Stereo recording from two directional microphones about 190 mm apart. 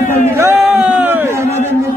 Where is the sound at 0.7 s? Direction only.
5° right (ahead or behind).